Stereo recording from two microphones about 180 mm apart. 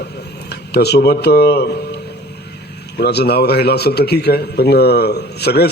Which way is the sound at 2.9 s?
65° left (ahead or behind).